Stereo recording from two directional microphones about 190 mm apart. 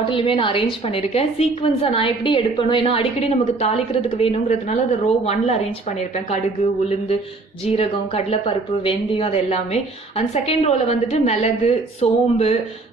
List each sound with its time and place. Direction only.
0.0 s a woman's voice: 25° left (ahead or behind)
7.6 s a woman's voice: 30° left (ahead or behind)